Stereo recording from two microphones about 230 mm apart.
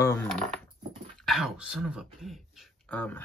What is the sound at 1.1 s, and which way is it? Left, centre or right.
Speech, centre.